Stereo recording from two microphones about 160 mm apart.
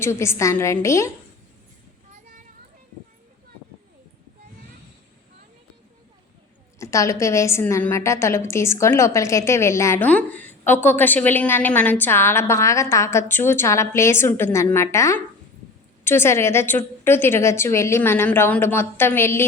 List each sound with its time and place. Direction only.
0.0 s a woman's voice: 15° left (ahead or behind)
6.7 s a woman's voice: 20° left (ahead or behind)